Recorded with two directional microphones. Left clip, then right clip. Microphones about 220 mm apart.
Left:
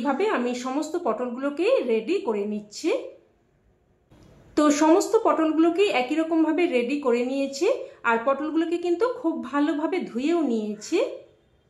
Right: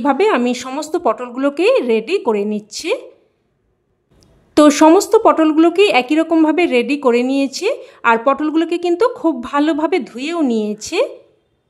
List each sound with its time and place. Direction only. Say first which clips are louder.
0.0 s speech: right 10 dB; 50° right (ahead or behind)
4.6 s speech: right 10 dB; 45° right (ahead or behind)